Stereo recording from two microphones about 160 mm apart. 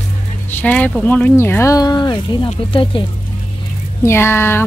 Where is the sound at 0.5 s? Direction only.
10° left (ahead or behind); by 3.0 s 30° left (ahead or behind).